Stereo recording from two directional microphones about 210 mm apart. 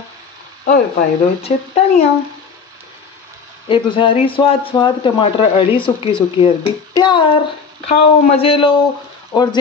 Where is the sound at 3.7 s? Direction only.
25° left (ahead or behind).